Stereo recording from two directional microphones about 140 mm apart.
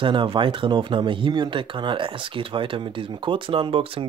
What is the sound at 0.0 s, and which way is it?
Speech, 35° right (ahead or behind).